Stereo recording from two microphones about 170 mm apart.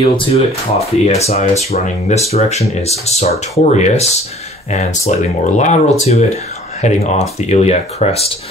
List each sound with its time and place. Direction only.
0.0 s speech: 35° left (ahead or behind)